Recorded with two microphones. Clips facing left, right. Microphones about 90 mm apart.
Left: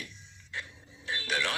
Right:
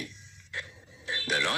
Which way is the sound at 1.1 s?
10° right (ahead or behind).